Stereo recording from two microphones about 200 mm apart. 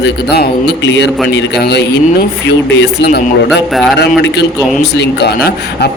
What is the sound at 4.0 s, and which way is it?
Speech, 55° left (ahead or behind).